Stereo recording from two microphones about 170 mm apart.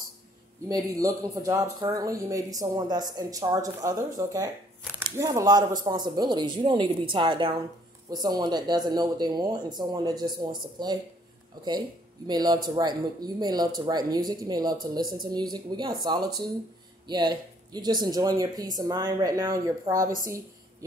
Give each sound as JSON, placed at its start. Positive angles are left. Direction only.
{"t": 0.7, "sound": "speech", "side_deg": -20}
{"t": 12.3, "sound": "speech", "side_deg": -25}